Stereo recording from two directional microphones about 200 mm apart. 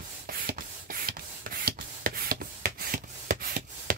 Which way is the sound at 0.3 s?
50° right (ahead or behind).